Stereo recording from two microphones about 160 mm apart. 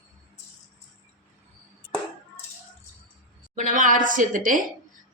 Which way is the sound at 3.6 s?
55° right (ahead or behind).